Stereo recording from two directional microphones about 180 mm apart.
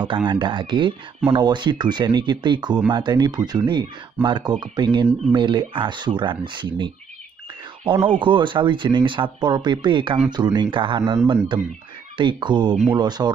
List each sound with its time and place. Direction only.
0.3 s speech: 25° right (ahead or behind)